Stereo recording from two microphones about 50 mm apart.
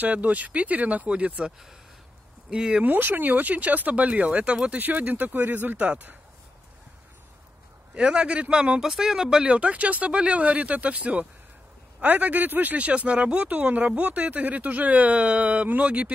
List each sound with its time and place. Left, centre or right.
0.0 s speech: right
2.5 s speech: centre
2.8 s speech: right
7.9 s speech: right
9.5 s speech: right